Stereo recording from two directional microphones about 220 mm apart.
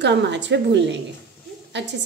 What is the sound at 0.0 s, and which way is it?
A woman's voice, 50° right (ahead or behind).